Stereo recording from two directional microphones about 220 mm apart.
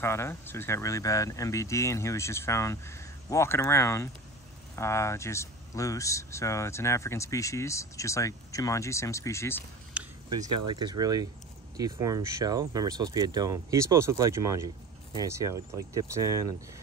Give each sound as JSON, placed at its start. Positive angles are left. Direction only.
{"t": 0.0, "sound": "speech", "side_deg": 10}
{"t": 9.9, "sound": "a sound", "side_deg": -5}
{"t": 10.7, "sound": "speech", "side_deg": -20}